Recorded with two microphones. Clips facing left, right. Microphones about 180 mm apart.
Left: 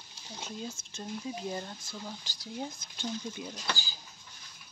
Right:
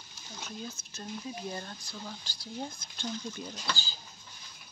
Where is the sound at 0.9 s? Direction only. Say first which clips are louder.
Left 2 dB; 20° left (ahead or behind).